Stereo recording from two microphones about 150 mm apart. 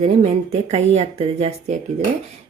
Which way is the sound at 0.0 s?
45° right (ahead or behind).